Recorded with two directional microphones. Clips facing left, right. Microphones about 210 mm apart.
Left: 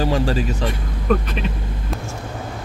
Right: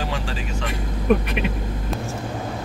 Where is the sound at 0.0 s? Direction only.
40° left (ahead or behind).